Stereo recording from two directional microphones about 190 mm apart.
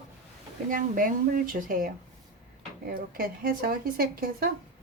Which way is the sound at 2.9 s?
50° right (ahead or behind).